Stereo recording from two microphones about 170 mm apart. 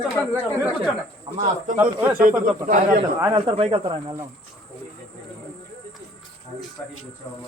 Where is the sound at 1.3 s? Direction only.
30° right (ahead or behind).